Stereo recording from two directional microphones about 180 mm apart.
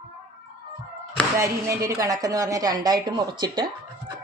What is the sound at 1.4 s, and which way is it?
A woman's voice, 15° right (ahead or behind).